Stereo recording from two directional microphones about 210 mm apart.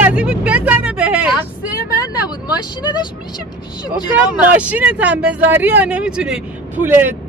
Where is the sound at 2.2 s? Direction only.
20° left (ahead or behind).